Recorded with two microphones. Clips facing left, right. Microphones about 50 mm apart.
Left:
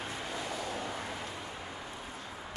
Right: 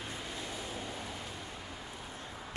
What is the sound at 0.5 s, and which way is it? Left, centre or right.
Vehicle, left.